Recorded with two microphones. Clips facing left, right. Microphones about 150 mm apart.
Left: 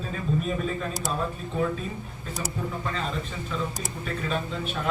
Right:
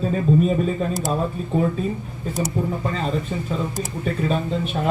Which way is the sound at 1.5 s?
40° right (ahead or behind).